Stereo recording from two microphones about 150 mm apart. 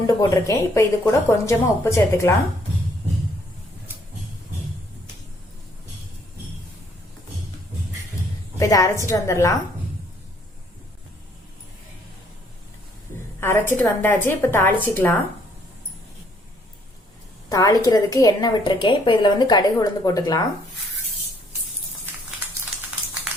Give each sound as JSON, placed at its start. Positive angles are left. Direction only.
{"t": 0.1, "sound": "a woman's voice", "side_deg": 20}
{"t": 8.5, "sound": "a woman's voice", "side_deg": 20}
{"t": 13.4, "sound": "a woman's voice", "side_deg": 15}
{"t": 17.5, "sound": "a woman's voice", "side_deg": 20}